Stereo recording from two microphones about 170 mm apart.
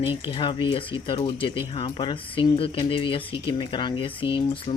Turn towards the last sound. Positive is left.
turn(degrees=30)  # may be behind; listen again after turning